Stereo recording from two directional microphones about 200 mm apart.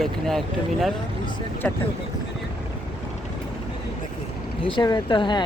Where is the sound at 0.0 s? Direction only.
Centre (ahead or behind).